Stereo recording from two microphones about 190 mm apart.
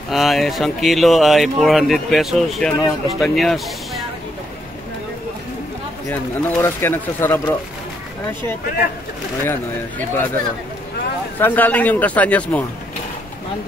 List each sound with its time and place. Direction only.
0.1 s speech: centre (ahead or behind)
6.0 s speech: 10° left (ahead or behind)
9.5 s speech: 10° left (ahead or behind)
11.3 s speech: 10° left (ahead or behind)